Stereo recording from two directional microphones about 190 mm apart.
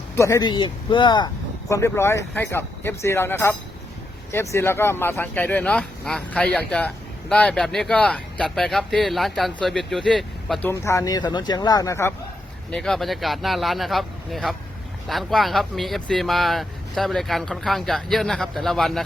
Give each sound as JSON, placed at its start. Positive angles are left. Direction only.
{"t": 0.2, "sound": "speech", "side_deg": 15}
{"t": 10.7, "sound": "speech", "side_deg": 15}
{"t": 12.7, "sound": "speech", "side_deg": 0}